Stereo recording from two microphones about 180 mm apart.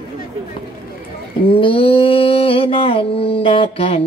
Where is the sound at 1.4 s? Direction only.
30° left (ahead or behind).